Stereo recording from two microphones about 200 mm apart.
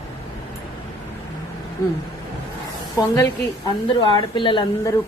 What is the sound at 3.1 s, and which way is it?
A woman's voice, 20° left (ahead or behind).